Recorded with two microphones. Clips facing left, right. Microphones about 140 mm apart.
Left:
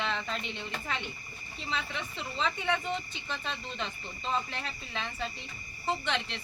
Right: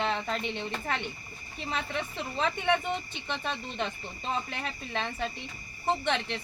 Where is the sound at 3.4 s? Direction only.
45° right (ahead or behind).